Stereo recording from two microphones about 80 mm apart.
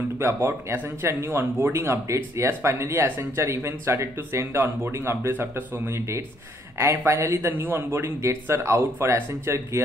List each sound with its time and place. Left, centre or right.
0.2 s speech: right